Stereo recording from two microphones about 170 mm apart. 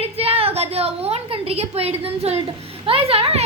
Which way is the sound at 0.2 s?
35° right (ahead or behind).